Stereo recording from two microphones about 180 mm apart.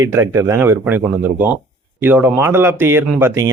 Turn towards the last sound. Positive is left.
turn(degrees=-15)  # may be behind; listen again after turning